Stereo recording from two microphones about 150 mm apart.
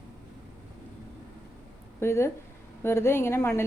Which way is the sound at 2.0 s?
15° left (ahead or behind).